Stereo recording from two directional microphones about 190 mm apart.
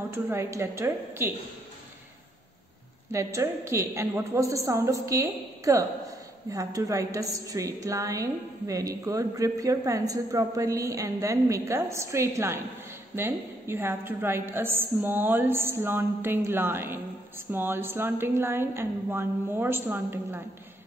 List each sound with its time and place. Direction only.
0.1 s a woman's voice: 15° right (ahead or behind)
3.1 s a woman's voice: 15° right (ahead or behind)